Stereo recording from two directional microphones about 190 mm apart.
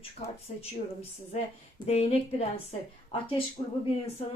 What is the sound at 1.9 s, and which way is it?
Speech, 35° left (ahead or behind).